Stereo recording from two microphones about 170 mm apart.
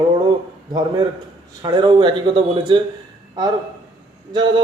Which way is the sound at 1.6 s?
25° right (ahead or behind).